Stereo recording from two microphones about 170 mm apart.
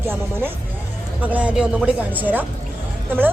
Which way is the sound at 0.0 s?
15° right (ahead or behind).